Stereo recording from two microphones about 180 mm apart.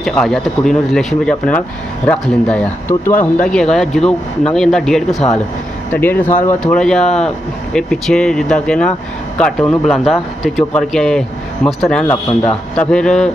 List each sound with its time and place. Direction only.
0.0 s speech: 5° left (ahead or behind)
5.2 s speech: 30° left (ahead or behind)
5.9 s speech: 10° left (ahead or behind)